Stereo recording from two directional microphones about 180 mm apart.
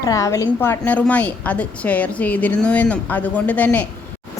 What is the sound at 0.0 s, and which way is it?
A woman's voice, 20° left (ahead or behind).